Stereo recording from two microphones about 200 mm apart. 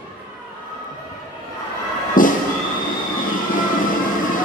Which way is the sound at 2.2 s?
45° left (ahead or behind).